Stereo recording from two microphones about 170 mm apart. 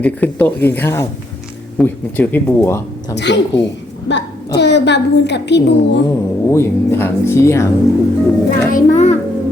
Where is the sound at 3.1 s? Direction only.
90° left.